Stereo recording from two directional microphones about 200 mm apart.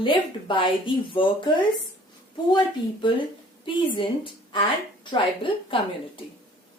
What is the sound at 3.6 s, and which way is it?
A woman's voice, 25° left (ahead or behind).